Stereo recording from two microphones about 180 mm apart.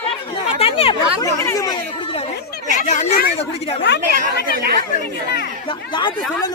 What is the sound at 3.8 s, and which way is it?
Speech, 70° left (ahead or behind).